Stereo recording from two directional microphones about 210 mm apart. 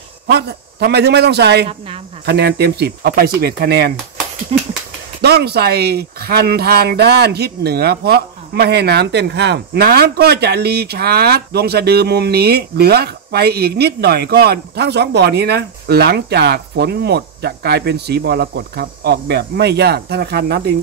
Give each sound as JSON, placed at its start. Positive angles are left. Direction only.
{"t": 0.3, "sound": "speech", "side_deg": -50}
{"t": 4.5, "sound": "a sound", "side_deg": -30}
{"t": 5.2, "sound": "speech", "side_deg": -50}